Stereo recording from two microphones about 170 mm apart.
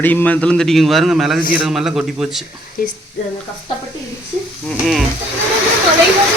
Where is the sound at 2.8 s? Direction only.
55° left (ahead or behind).